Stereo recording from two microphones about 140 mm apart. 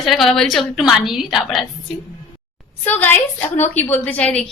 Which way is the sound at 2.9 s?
15° left (ahead or behind).